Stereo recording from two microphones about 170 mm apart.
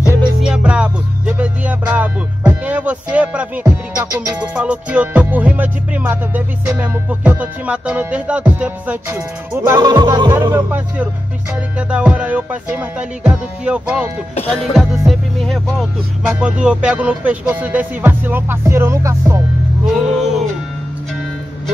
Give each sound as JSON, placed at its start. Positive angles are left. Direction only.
{"t": 0.4, "sound": "music", "side_deg": -5}
{"t": 9.8, "sound": "music", "side_deg": -25}
{"t": 11.9, "sound": "music", "side_deg": -5}
{"t": 19.9, "sound": "music", "side_deg": 0}